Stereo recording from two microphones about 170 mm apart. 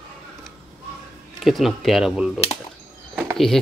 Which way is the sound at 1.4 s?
Centre (ahead or behind).